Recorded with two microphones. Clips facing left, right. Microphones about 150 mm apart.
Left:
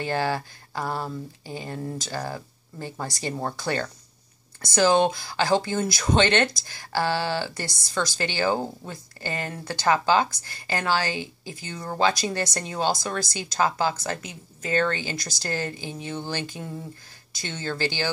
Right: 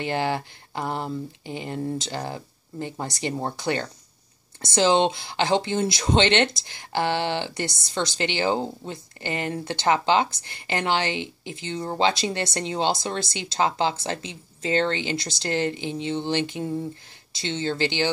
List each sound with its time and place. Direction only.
0.0 s speech: 20° right (ahead or behind)